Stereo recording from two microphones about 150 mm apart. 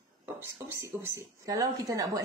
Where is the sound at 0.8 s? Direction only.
20° right (ahead or behind).